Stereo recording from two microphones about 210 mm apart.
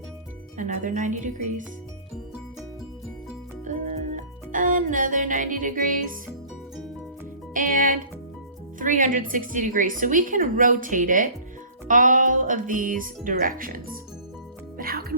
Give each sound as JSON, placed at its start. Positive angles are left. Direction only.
{"t": 0.5, "sound": "a woman's voice", "side_deg": -35}
{"t": 3.6, "sound": "music", "side_deg": -35}
{"t": 7.5, "sound": "a woman's voice", "side_deg": -40}
{"t": 14.8, "sound": "music", "side_deg": -45}